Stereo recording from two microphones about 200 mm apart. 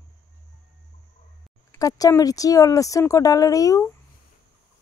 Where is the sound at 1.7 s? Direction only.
15° left (ahead or behind).